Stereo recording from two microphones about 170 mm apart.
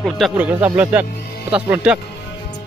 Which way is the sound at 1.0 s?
65° left (ahead or behind).